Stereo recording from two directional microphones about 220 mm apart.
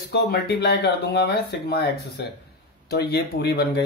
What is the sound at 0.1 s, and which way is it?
Speech, 45° left (ahead or behind).